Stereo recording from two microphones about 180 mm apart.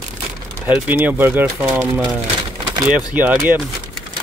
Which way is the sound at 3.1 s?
5° right (ahead or behind).